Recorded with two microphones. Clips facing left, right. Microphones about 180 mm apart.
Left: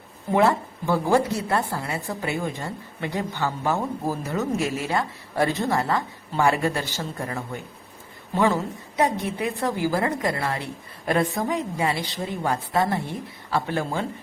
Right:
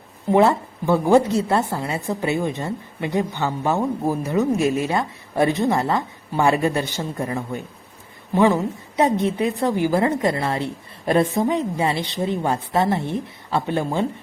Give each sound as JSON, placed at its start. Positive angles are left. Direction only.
{"t": 0.3, "sound": "a woman's voice", "side_deg": -20}